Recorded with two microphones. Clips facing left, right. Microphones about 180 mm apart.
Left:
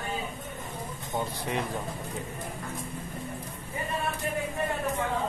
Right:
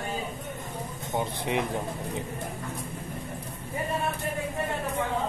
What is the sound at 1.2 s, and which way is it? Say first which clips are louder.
Speech: right 3 dB; 20° right (ahead or behind).